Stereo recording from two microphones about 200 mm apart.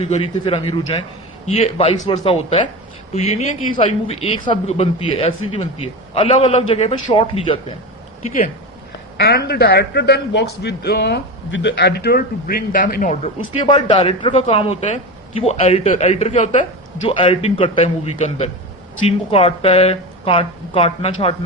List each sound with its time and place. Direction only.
0.0 s a man's voice: 30° left (ahead or behind)
9.1 s a man's voice: 55° left (ahead or behind)
13.7 s a man's voice: 30° left (ahead or behind)